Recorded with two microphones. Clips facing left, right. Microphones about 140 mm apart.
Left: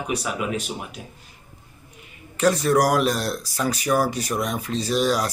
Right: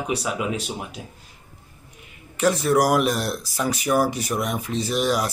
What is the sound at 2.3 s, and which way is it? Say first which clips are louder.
Speech: even; 10° right (ahead or behind).